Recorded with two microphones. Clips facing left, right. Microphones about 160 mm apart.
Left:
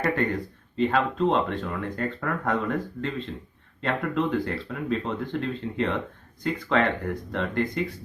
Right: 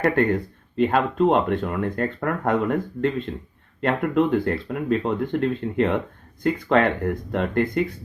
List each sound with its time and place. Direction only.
0.8 s speech: 55° right (ahead or behind)